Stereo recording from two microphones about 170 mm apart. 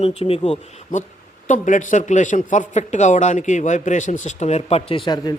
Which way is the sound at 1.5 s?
50° left (ahead or behind).